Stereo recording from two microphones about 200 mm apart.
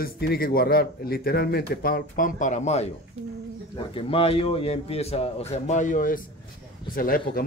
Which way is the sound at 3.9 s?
25° left (ahead or behind).